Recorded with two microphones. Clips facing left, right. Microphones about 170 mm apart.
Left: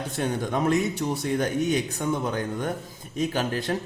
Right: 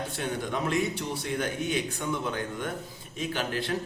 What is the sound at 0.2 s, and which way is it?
Speech, 45° left (ahead or behind).